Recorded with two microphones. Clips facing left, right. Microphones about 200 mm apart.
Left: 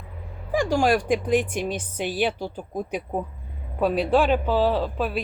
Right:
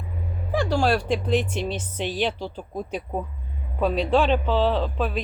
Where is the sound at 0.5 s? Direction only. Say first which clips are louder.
Left 1 dB; 15° left (ahead or behind).